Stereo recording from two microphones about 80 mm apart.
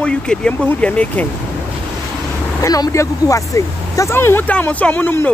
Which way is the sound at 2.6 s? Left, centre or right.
Left.